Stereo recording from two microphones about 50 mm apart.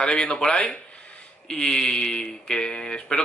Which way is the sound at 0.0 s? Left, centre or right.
Centre.